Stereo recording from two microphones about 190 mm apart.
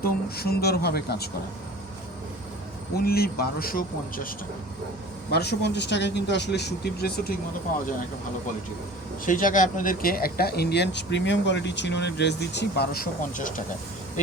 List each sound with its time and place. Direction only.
0.0 s speech: 55° left (ahead or behind)
3.0 s speech: 55° left (ahead or behind)
5.3 s speech: 60° left (ahead or behind)
9.2 s speech: 45° left (ahead or behind)